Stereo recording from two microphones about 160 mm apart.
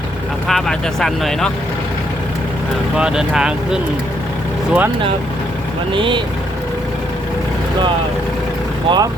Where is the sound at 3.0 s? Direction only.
5° right (ahead or behind).